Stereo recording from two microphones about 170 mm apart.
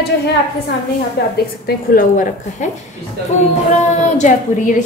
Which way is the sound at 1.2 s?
70° left (ahead or behind).